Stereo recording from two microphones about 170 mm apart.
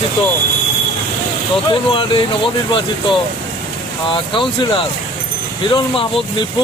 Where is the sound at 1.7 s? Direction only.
30° left (ahead or behind).